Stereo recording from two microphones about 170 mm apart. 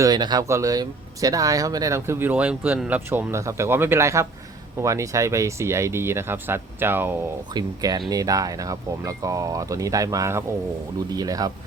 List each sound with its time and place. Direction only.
0.0 s speech: 25° right (ahead or behind)
7.5 s speech: 25° right (ahead or behind)